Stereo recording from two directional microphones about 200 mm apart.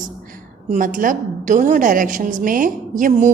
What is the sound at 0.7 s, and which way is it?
A woman's voice, 40° right (ahead or behind).